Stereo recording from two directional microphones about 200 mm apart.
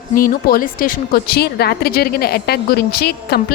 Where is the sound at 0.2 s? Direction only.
45° left (ahead or behind).